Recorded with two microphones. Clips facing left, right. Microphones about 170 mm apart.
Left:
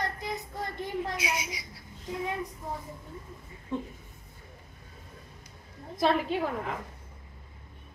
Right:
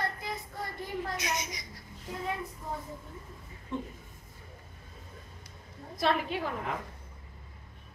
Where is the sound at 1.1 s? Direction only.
10° left (ahead or behind).